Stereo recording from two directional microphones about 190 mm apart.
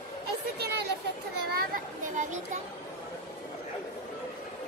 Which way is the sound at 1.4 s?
45° right (ahead or behind).